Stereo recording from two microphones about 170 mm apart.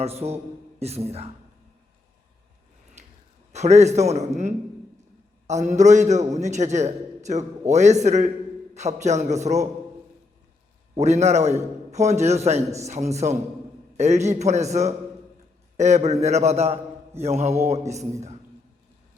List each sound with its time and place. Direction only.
0.0 s a man's voice: 35° right (ahead or behind)
3.0 s a sound: 40° right (ahead or behind)
3.5 s a man's voice: 40° right (ahead or behind)
10.9 s a man's voice: 40° right (ahead or behind)